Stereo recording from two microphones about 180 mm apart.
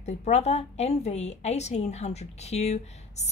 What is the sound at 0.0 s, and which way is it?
A woman's voice, 40° left (ahead or behind).